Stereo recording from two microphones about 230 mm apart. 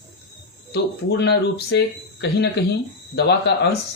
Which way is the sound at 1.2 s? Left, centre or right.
Left.